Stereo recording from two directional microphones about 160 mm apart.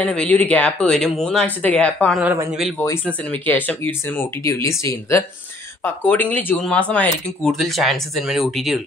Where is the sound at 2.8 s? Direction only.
10° left (ahead or behind).